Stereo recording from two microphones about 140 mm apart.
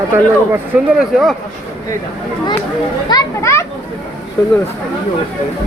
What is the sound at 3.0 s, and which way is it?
Speech, 25° left (ahead or behind).